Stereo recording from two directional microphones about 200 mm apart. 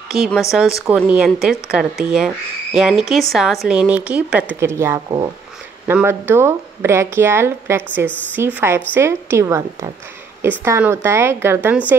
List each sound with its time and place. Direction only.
0.1 s a woman's voice: centre (ahead or behind)